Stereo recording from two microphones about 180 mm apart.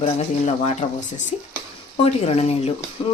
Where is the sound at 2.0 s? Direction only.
35° left (ahead or behind).